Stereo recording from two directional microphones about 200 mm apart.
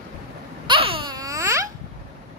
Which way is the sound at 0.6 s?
25° right (ahead or behind).